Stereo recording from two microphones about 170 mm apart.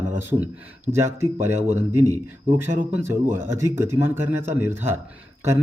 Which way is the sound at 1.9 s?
20° left (ahead or behind).